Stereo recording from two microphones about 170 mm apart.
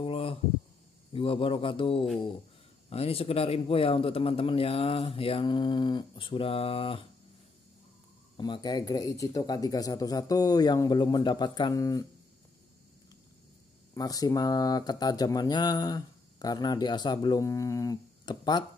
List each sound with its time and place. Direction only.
0.0 s a sound: 35° left (ahead or behind)
1.1 s speech: 35° left (ahead or behind)
8.4 s speech: 25° left (ahead or behind)
13.9 s speech: 20° left (ahead or behind)